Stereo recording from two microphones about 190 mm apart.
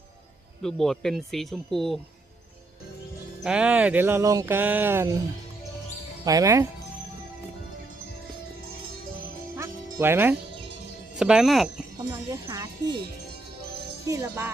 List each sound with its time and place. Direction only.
0.6 s speech: centre (ahead or behind)
3.4 s speech: 5° right (ahead or behind)
6.2 s speech: 15° right (ahead or behind)
9.6 s music: 10° right (ahead or behind)
11.2 s speech: 5° right (ahead or behind)
12.1 s speech: 20° right (ahead or behind)
14.1 s speech: 15° right (ahead or behind)